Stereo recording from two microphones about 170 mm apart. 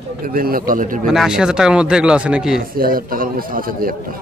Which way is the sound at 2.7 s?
60° right (ahead or behind).